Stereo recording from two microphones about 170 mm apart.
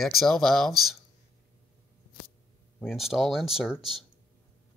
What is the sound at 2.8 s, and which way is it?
Speech, centre (ahead or behind).